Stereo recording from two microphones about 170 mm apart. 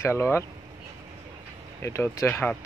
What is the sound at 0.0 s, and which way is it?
Speech, 15° left (ahead or behind).